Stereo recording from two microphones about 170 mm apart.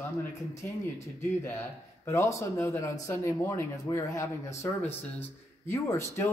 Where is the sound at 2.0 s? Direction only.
15° left (ahead or behind).